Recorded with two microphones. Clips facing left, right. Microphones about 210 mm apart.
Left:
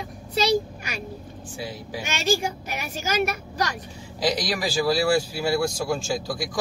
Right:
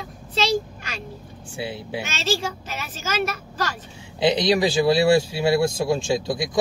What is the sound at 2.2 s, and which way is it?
Speech, 10° left (ahead or behind).